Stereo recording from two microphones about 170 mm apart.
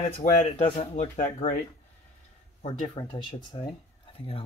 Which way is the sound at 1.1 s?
45° left (ahead or behind).